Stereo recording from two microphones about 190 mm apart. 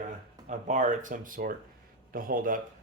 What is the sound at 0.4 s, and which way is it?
Speech, 40° right (ahead or behind).